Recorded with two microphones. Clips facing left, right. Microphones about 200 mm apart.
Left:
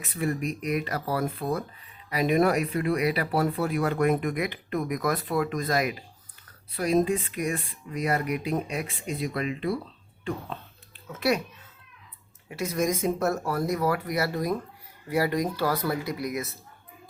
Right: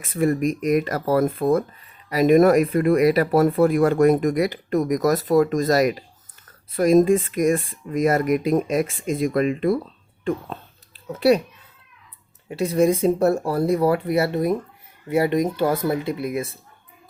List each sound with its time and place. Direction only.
0.0 s speech: 45° right (ahead or behind)
11.1 s speech: 35° right (ahead or behind)
12.5 s speech: 30° right (ahead or behind)